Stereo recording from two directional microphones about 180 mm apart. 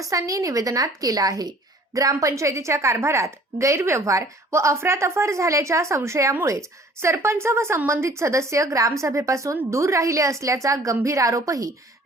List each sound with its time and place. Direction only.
0.1 s a woman's voice: 20° right (ahead or behind)